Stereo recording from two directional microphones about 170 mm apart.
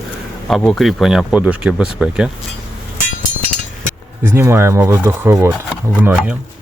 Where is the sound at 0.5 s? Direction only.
Centre (ahead or behind).